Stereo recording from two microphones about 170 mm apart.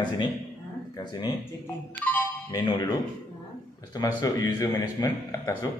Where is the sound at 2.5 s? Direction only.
25° left (ahead or behind).